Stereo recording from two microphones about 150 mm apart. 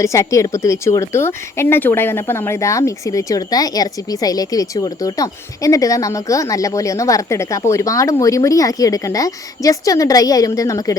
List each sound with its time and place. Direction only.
0.0 s speech: 20° left (ahead or behind)